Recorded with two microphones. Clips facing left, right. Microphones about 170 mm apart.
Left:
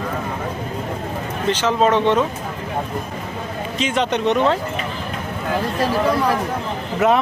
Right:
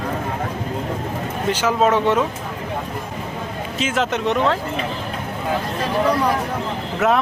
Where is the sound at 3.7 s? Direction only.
Centre (ahead or behind).